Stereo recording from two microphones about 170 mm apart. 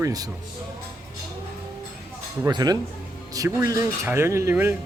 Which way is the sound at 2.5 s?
25° right (ahead or behind).